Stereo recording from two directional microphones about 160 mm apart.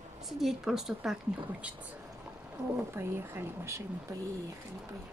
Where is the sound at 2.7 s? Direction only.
15° right (ahead or behind).